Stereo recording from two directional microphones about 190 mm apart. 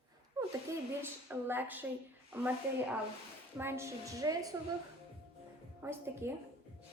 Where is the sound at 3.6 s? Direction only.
15° right (ahead or behind).